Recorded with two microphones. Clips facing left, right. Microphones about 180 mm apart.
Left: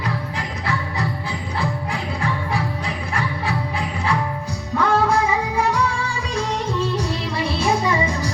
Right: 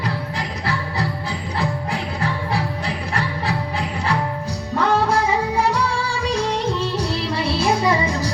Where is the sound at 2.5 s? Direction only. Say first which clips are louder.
Right 1 dB; 35° right (ahead or behind).